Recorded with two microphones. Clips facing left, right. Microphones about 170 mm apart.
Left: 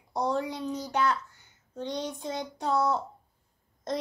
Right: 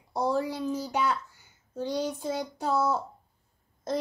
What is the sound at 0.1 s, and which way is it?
A child's voice, 5° right (ahead or behind).